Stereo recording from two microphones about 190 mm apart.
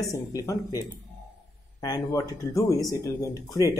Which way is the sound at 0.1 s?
15° left (ahead or behind).